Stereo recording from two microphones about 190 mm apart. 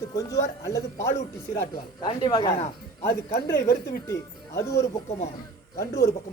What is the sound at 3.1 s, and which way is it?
Speech, 55° left (ahead or behind).